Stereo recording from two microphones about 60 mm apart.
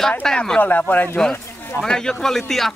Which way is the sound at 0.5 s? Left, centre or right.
Left.